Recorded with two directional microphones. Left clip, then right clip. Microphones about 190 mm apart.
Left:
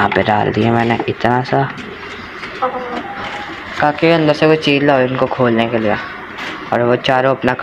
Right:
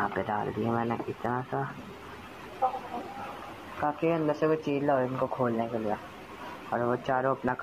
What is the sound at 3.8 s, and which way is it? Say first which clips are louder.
Speech: left 16 dB; 35° left (ahead or behind).